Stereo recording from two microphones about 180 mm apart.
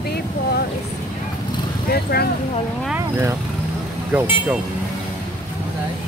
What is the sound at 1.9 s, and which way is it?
Speech, 60° left (ahead or behind).